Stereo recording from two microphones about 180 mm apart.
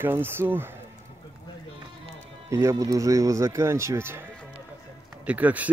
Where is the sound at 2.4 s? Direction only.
15° right (ahead or behind).